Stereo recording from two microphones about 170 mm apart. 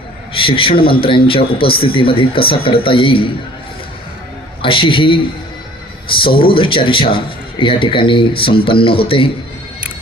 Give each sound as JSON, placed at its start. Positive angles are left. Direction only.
{"t": 0.3, "sound": "speech", "side_deg": 30}
{"t": 4.6, "sound": "speech", "side_deg": 30}